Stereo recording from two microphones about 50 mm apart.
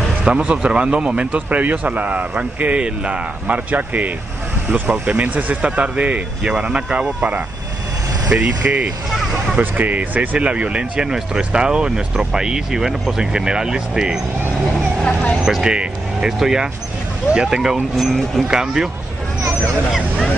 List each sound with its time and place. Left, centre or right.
0.3 s speech: right
4.8 s speech: centre
5.2 s speech: right
5.6 s speech: right
8.3 s speech: centre
9.6 s speech: right; by 14.2 s centre
15.4 s speech: centre
17.9 s speech: centre
18.5 s speech: centre